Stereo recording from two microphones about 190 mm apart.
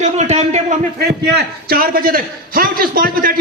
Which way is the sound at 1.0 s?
60° right (ahead or behind).